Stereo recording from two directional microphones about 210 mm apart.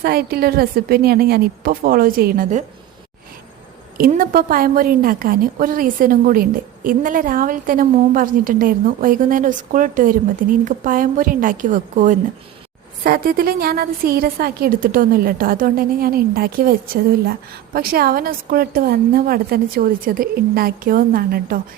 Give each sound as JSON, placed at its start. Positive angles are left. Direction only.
{"t": 0.0, "sound": "a woman's voice", "side_deg": -45}
{"t": 3.9, "sound": "a woman's voice", "side_deg": -40}